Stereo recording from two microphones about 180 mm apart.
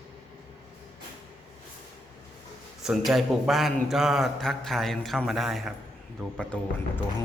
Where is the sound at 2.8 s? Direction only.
Centre (ahead or behind).